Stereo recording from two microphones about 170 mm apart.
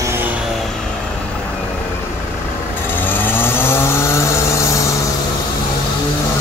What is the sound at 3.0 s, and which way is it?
Chainsaw, 10° left (ahead or behind).